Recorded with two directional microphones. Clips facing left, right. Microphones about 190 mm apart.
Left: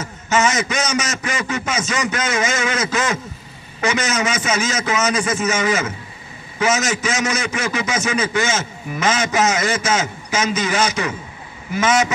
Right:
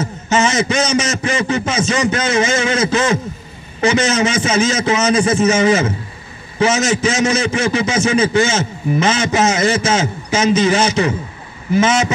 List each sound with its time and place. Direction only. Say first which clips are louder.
0.0 s a man's voice: right 2 dB; 30° right (ahead or behind)